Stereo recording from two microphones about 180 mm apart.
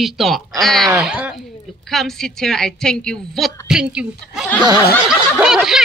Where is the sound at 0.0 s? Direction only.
Centre (ahead or behind).